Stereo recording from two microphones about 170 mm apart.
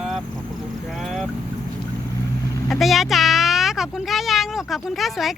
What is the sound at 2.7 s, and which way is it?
Speech, centre (ahead or behind).